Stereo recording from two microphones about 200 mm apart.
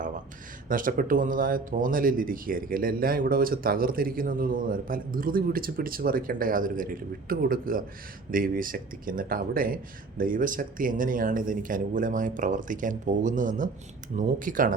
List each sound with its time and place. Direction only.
0.7 s speech: 45° right (ahead or behind)